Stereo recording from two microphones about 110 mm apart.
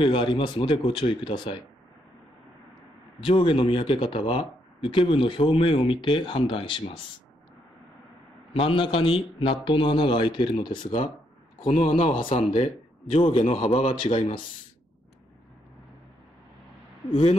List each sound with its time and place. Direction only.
0.0 s speech: 50° left (ahead or behind)
3.2 s speech: 50° left (ahead or behind)
8.5 s speech: 55° left (ahead or behind)
11.6 s a man's voice: 60° left (ahead or behind)
13.2 s a man's voice: 50° left (ahead or behind)